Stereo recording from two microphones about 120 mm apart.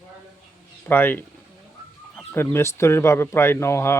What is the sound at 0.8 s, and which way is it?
Speech, 15° left (ahead or behind).